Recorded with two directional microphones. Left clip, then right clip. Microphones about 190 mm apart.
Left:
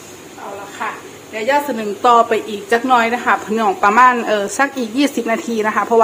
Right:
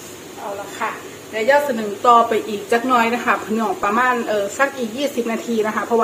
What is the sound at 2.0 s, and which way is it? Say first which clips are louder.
A woman's voice: left 1 dB; 55° left (ahead or behind).